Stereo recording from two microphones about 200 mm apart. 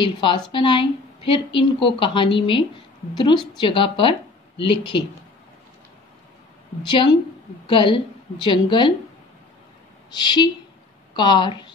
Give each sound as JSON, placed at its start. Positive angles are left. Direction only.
{"t": 0.0, "sound": "speech", "side_deg": 25}
{"t": 6.8, "sound": "speech", "side_deg": 25}
{"t": 10.1, "sound": "speech", "side_deg": 20}